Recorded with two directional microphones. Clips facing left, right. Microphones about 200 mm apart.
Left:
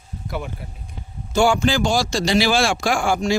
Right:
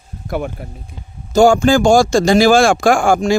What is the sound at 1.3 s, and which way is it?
Speech, 45° right (ahead or behind).